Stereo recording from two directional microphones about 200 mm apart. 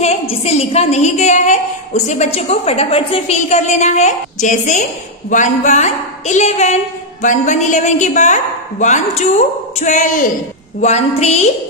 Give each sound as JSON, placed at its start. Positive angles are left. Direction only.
{"t": 0.0, "sound": "a woman's voice", "side_deg": 30}